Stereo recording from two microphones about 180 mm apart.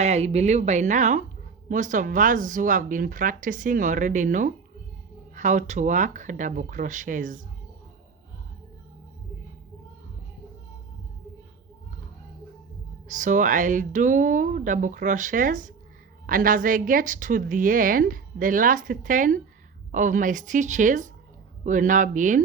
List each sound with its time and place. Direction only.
0.0 s a woman's voice: 35° right (ahead or behind)
13.1 s a woman's voice: 45° right (ahead or behind)